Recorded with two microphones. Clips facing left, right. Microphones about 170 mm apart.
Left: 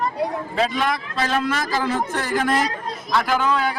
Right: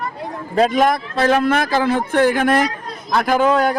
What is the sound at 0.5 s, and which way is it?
Speech, 45° right (ahead or behind).